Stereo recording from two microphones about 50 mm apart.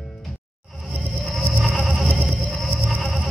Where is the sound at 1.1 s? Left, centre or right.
Centre.